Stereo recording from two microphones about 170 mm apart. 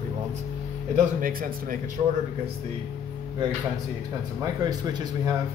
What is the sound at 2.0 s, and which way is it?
Speech, 40° right (ahead or behind).